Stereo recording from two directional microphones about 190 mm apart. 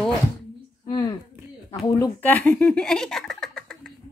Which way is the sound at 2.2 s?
10° left (ahead or behind).